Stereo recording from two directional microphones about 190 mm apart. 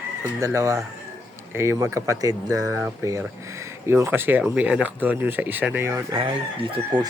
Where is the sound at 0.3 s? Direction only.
15° right (ahead or behind).